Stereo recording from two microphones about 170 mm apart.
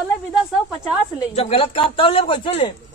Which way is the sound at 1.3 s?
35° left (ahead or behind).